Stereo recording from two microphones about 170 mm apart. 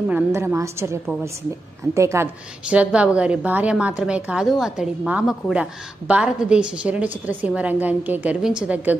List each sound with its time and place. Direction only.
0.1 s a woman's voice: 15° right (ahead or behind)
2.0 s a woman's voice: 15° right (ahead or behind)